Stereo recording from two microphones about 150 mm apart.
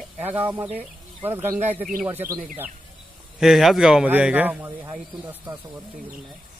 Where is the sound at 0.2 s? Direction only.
10° right (ahead or behind).